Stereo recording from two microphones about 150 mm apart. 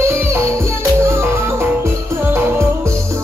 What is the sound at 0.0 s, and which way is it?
Music, 15° right (ahead or behind).